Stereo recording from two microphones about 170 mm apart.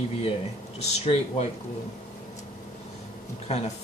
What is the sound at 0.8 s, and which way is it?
Speech, 40° left (ahead or behind).